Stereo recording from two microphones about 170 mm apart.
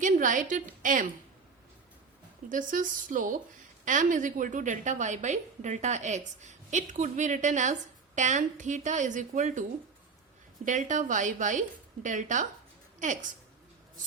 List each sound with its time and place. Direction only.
0.0 s a woman's voice: 50° right (ahead or behind)
2.5 s a woman's voice: 50° right (ahead or behind)
10.7 s a woman's voice: 45° right (ahead or behind)